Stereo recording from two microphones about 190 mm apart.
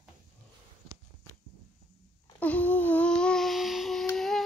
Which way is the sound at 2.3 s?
10° left (ahead or behind).